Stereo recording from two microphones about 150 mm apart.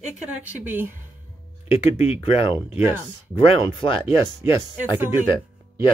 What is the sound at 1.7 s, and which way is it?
Speech, 40° left (ahead or behind).